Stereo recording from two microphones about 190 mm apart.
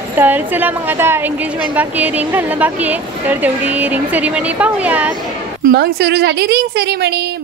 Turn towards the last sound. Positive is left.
turn(degrees=-60)  # may be behind; listen again after turning